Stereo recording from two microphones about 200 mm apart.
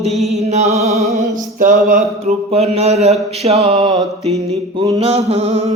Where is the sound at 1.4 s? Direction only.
40° right (ahead or behind).